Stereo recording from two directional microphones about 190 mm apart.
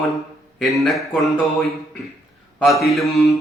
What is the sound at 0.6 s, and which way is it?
Speech, centre (ahead or behind).